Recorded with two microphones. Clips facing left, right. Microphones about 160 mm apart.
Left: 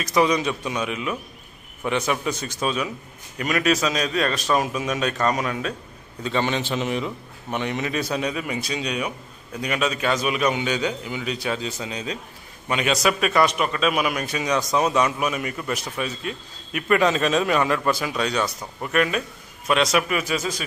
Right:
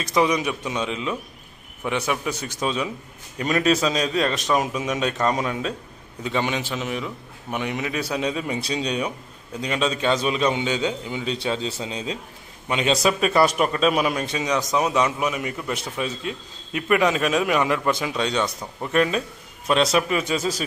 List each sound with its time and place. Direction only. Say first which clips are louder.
0.0 s a man's voice: left 1 dB; 20° right (ahead or behind)
1.9 s a man's voice: left 1 dB; 10° right (ahead or behind)
3.3 s a man's voice: right 1 dB; 30° right (ahead or behind)
18.4 s speech: right 1 dB; 5° left (ahead or behind)
18.9 s a man's voice: right 1 dB; 30° right (ahead or behind)